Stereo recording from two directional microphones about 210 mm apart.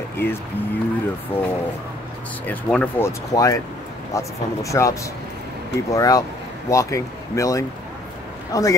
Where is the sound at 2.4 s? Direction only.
10° left (ahead or behind).